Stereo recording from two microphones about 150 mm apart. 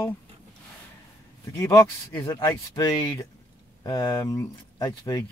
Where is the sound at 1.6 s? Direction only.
25° left (ahead or behind).